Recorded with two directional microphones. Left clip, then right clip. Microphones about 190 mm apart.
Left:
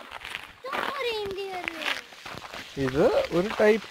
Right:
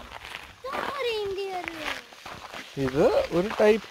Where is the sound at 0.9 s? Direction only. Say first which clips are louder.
Right 1 dB; 40° right (ahead or behind).